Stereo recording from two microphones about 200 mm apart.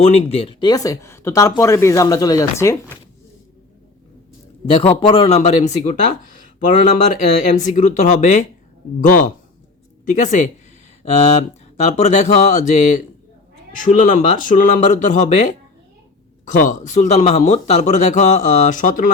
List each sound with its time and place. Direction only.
0.0 s speech: 30° left (ahead or behind); by 3.0 s 15° left (ahead or behind)
4.6 s speech: 25° left (ahead or behind)